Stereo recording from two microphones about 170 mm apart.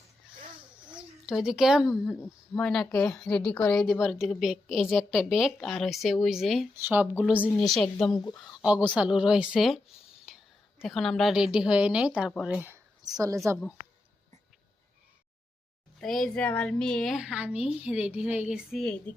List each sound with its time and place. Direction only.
0.9 s speech: 5° right (ahead or behind)
2.1 s a woman's voice: 10° left (ahead or behind)
6.7 s a woman's voice: 10° right (ahead or behind)
8.1 s speech: 25° left (ahead or behind)
8.4 s a woman's voice: 5° right (ahead or behind); by 13.4 s 20° right (ahead or behind)
16.0 s a woman's voice: centre (ahead or behind)